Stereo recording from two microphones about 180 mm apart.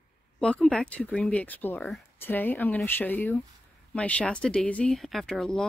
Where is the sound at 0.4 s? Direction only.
5° left (ahead or behind).